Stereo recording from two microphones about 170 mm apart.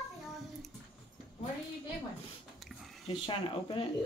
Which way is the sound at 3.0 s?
30° left (ahead or behind).